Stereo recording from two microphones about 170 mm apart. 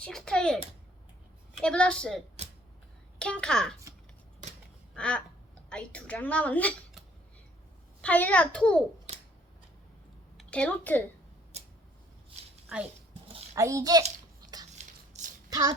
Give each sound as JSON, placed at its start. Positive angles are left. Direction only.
{"t": 0.0, "sound": "a child's voice", "side_deg": 5}
{"t": 1.6, "sound": "a child's voice", "side_deg": 5}
{"t": 4.9, "sound": "a sound", "side_deg": 5}
{"t": 5.6, "sound": "a woman's voice", "side_deg": 5}
{"t": 8.0, "sound": "a woman's voice", "side_deg": 10}
{"t": 10.3, "sound": "speech", "side_deg": 5}
{"t": 13.6, "sound": "a child's voice", "side_deg": -20}
{"t": 14.8, "sound": "a sound", "side_deg": -45}
{"t": 15.4, "sound": "a sound", "side_deg": -20}